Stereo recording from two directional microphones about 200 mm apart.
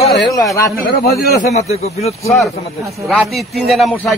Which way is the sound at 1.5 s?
30° left (ahead or behind).